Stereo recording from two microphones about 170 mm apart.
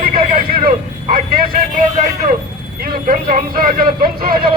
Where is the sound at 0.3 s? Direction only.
55° right (ahead or behind).